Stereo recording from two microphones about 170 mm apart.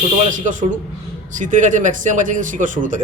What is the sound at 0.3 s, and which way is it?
Speech, 50° right (ahead or behind).